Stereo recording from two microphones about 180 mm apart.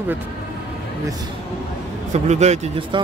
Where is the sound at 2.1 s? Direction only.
40° right (ahead or behind).